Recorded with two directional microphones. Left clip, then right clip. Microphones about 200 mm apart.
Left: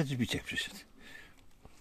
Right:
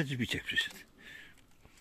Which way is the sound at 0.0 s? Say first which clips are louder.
Even; 25° left (ahead or behind).